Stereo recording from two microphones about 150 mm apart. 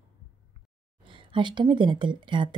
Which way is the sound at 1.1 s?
35° right (ahead or behind).